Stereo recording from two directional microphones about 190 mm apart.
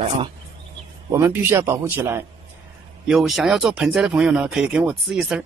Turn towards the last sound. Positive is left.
turn(degrees=-5)  # may be behind; listen again after turning